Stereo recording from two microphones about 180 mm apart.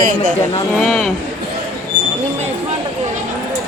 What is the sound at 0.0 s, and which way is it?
Speech, 50° right (ahead or behind).